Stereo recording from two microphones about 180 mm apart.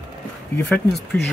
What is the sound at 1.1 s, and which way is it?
Speech, 10° left (ahead or behind).